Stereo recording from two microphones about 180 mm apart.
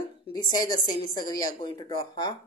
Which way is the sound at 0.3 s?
25° left (ahead or behind).